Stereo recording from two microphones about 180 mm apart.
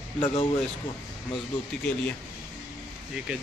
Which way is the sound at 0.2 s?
30° left (ahead or behind).